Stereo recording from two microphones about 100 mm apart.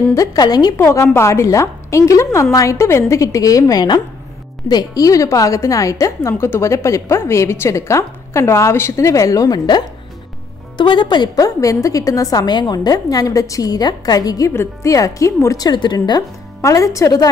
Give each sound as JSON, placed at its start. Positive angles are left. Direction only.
{"t": 0.1, "sound": "a woman's voice", "side_deg": 35}
{"t": 0.7, "sound": "a woman's voice", "side_deg": 25}
{"t": 14.5, "sound": "a woman's voice", "side_deg": 30}
{"t": 15.5, "sound": "a woman's voice", "side_deg": 45}
{"t": 16.2, "sound": "speech", "side_deg": 35}